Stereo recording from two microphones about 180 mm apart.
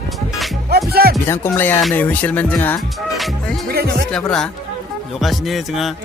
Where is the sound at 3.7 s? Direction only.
60° right (ahead or behind).